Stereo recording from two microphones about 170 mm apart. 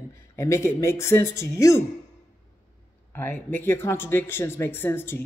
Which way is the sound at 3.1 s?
10° left (ahead or behind).